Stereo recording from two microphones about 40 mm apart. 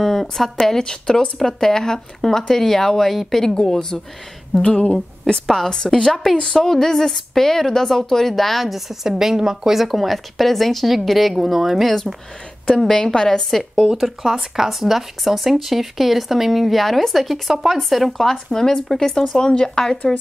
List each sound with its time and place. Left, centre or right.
0.0 s a sound: centre
0.6 s speech: centre
4.6 s speech: left
5.9 s speech: centre
9.8 s speech: centre
12.6 s speech: centre
13.9 s speech: centre
18.1 s speech: centre